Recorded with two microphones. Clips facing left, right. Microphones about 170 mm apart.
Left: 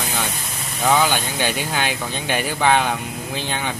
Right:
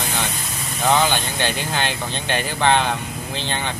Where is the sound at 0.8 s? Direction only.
10° left (ahead or behind).